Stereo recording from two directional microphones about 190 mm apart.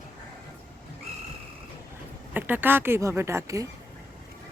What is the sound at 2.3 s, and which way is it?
Speech, 10° right (ahead or behind).